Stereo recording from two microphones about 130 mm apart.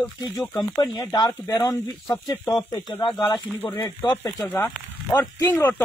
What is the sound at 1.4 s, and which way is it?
Speech, 25° left (ahead or behind).